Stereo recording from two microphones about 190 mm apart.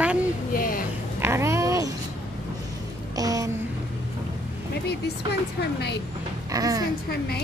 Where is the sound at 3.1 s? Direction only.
20° right (ahead or behind).